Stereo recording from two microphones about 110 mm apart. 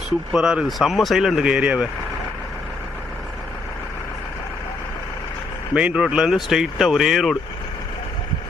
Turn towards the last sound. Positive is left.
turn(degrees=0)  # may be behind; listen again after turning